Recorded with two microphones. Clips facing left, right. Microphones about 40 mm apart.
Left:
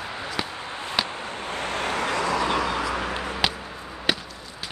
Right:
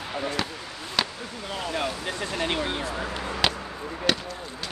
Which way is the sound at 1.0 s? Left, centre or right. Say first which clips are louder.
Even; centre.